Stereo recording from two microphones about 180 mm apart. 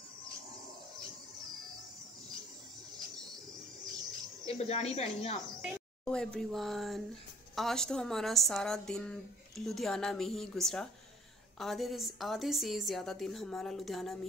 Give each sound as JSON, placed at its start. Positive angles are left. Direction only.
{"t": 4.5, "sound": "speech", "side_deg": 35}
{"t": 5.6, "sound": "a woman's voice", "side_deg": 5}